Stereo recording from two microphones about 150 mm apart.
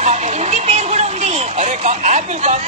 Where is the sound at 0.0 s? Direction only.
50° right (ahead or behind).